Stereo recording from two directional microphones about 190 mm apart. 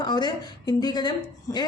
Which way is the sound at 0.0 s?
20° left (ahead or behind).